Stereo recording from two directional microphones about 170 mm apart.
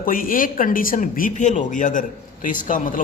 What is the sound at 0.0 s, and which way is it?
Speech, 55° left (ahead or behind).